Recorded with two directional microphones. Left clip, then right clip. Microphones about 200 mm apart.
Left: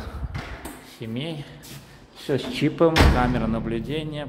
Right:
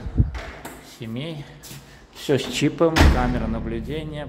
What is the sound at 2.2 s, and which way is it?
Speech, 20° right (ahead or behind).